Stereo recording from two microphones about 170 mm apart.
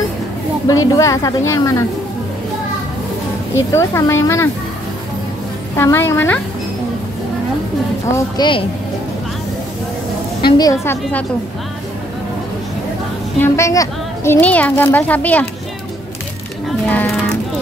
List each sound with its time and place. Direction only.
0.7 s a woman's voice: 20° left (ahead or behind)
3.5 s speech: 15° left (ahead or behind)
5.8 s speech: 15° left (ahead or behind)
8.1 s a woman's voice: 25° left (ahead or behind)
10.4 s speech: 20° left (ahead or behind)
13.4 s a woman's voice: 15° left (ahead or behind)
16.6 s speech: 5° left (ahead or behind)